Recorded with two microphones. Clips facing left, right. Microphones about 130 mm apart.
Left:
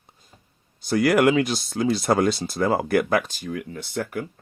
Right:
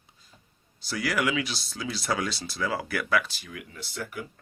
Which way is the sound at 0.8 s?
50° left (ahead or behind).